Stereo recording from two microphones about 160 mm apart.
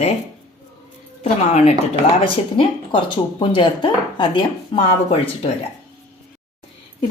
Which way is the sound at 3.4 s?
30° left (ahead or behind).